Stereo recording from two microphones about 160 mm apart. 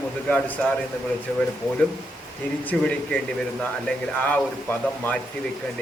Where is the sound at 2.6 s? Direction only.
5° left (ahead or behind).